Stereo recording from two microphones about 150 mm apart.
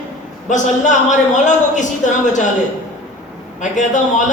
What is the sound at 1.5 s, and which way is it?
Speech, 55° left (ahead or behind).